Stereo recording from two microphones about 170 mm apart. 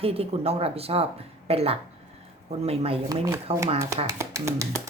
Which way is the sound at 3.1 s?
20° right (ahead or behind).